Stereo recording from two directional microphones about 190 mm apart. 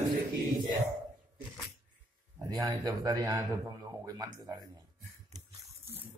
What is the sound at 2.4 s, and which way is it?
A man's voice, 20° right (ahead or behind).